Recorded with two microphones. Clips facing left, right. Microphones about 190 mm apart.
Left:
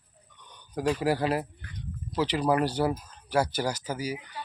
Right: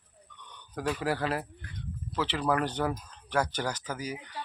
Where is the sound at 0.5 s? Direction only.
10° left (ahead or behind).